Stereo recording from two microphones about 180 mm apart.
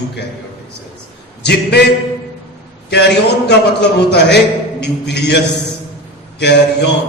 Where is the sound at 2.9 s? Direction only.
70° left (ahead or behind).